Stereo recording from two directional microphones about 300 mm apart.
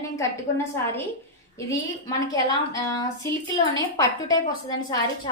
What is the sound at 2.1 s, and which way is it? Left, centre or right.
A woman's voice, centre.